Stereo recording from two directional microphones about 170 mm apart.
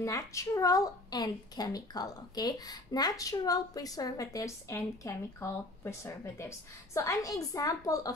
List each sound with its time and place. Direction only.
0.0 s speech: 20° left (ahead or behind)